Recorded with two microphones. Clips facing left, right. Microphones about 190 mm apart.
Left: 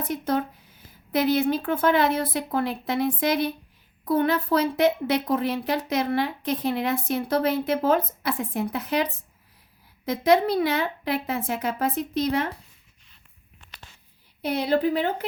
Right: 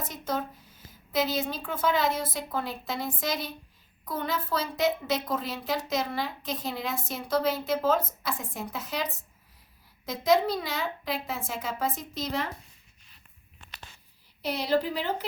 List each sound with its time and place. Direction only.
0.0 s a woman's voice: 60° left (ahead or behind)
10.1 s a woman's voice: 60° left (ahead or behind)
14.4 s a woman's voice: 55° left (ahead or behind)